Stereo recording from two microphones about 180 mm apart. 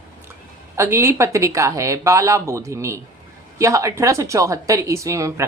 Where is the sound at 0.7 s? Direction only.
15° right (ahead or behind).